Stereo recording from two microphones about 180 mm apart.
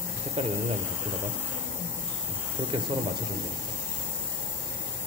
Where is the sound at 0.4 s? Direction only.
30° right (ahead or behind).